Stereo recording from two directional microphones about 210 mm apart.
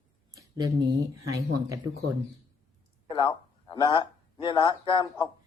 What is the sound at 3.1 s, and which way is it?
A man's voice, 20° left (ahead or behind).